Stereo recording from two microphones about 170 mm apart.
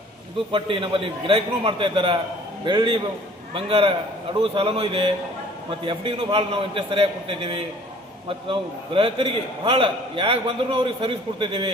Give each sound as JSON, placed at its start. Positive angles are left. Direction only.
{"t": 0.5, "sound": "a man's voice", "side_deg": -30}